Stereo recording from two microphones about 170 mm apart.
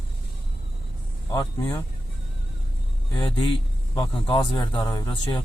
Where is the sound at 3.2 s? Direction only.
30° left (ahead or behind).